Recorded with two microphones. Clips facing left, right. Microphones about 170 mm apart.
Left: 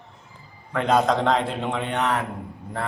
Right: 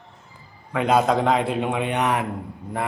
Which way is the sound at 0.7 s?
10° right (ahead or behind).